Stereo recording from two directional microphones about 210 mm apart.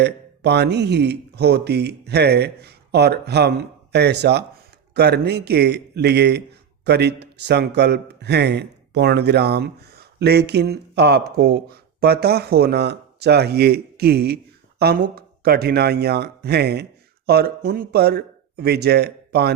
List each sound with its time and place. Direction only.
0.0 s a man's voice: 55° right (ahead or behind)